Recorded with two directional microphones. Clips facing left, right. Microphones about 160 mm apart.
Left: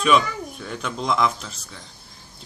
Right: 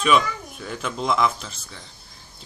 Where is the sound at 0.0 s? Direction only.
Centre (ahead or behind).